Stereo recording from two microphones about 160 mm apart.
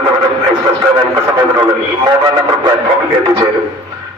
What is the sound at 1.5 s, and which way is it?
Radio, 25° right (ahead or behind).